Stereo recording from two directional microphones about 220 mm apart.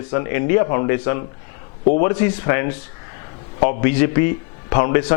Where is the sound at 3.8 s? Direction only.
15° left (ahead or behind).